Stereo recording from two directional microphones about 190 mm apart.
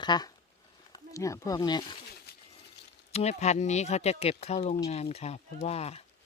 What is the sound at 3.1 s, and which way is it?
Speech, 35° left (ahead or behind).